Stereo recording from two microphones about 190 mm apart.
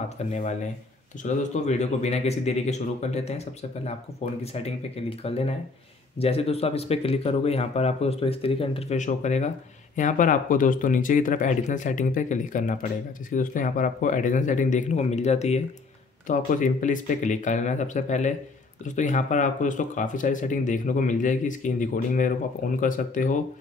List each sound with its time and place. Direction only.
0.3 s speech: 40° left (ahead or behind)